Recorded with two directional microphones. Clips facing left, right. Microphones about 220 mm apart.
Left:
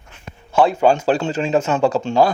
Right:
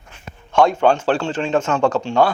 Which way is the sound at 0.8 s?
10° left (ahead or behind).